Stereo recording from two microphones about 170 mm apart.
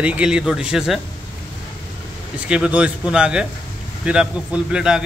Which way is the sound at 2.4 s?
5° right (ahead or behind).